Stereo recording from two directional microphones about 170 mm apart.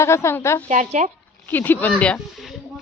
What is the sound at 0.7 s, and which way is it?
Speech, 45° right (ahead or behind).